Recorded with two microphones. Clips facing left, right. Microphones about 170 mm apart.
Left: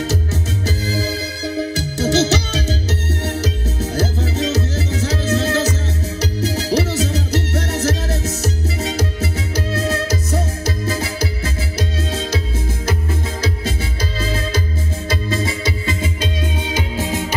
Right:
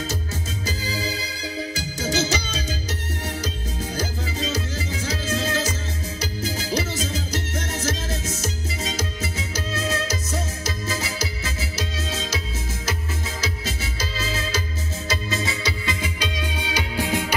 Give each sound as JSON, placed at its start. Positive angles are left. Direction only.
{"t": 1.0, "sound": "music", "side_deg": 65}
{"t": 14.2, "sound": "music", "side_deg": 55}
{"t": 16.0, "sound": "music", "side_deg": 30}